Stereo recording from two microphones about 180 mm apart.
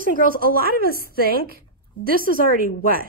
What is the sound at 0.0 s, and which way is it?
A woman's voice, 50° right (ahead or behind).